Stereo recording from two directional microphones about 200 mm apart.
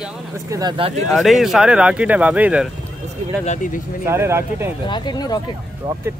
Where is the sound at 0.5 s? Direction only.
20° right (ahead or behind).